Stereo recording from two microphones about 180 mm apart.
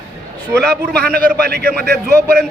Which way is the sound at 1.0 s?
55° right (ahead or behind).